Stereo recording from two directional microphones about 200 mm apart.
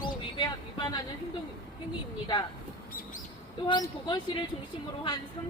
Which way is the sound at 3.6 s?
20° left (ahead or behind).